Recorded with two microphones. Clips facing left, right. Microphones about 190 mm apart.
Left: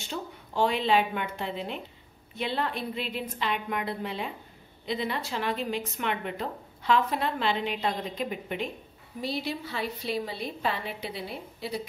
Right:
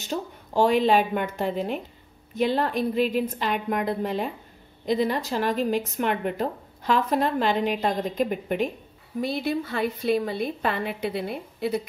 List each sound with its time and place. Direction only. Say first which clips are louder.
0.0 s a woman's voice: right 6 dB; 40° right (ahead or behind)